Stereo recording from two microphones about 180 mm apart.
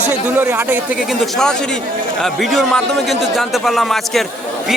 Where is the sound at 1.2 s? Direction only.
5° left (ahead or behind).